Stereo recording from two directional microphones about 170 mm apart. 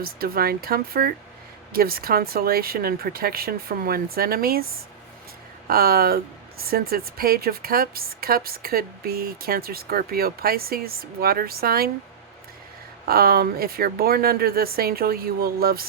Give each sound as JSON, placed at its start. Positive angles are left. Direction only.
{"t": 0.0, "sound": "a woman's voice", "side_deg": -60}
{"t": 5.6, "sound": "a woman's voice", "side_deg": -60}
{"t": 13.1, "sound": "a woman's voice", "side_deg": -60}